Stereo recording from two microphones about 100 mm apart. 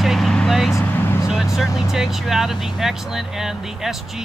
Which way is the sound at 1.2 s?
5° right (ahead or behind).